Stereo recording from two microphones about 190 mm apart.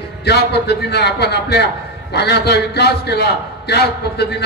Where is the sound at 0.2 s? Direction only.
60° left (ahead or behind).